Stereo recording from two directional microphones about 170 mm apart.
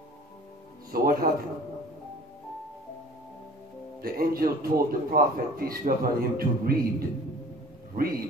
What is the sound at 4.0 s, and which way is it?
A man's voice, 60° right (ahead or behind).